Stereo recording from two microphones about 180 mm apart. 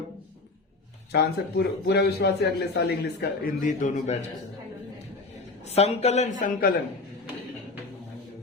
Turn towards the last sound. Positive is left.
turn(degrees=50)  # may be behind; listen again after turning